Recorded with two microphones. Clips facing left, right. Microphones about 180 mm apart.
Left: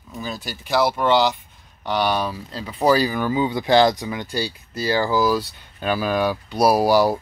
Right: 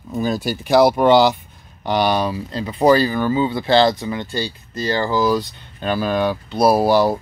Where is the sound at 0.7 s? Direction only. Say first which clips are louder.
Right 7 dB; 40° right (ahead or behind).